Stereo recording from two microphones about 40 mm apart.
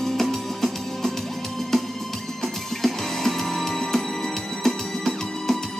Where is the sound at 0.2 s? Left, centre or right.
Centre.